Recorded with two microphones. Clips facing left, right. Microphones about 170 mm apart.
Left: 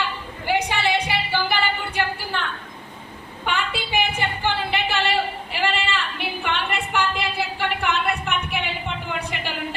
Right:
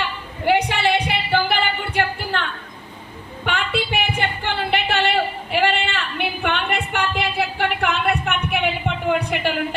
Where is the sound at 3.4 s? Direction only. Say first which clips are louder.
Right 3 dB; 65° right (ahead or behind).